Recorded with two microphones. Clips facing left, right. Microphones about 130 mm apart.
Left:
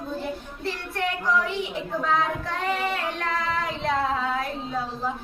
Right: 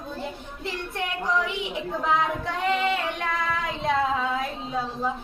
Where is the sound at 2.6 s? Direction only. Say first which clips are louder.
Right 3 dB; 20° right (ahead or behind).